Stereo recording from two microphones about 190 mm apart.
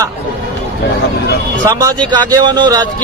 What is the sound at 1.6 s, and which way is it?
Speech, 20° right (ahead or behind).